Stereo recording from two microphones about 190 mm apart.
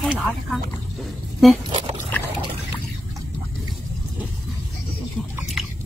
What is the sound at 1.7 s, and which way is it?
Pig, 25° right (ahead or behind).